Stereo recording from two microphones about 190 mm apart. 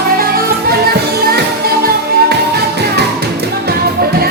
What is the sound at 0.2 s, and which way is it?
Music, 50° right (ahead or behind).